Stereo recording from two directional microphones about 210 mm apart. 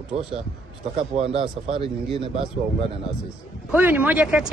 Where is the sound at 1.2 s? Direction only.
25° right (ahead or behind).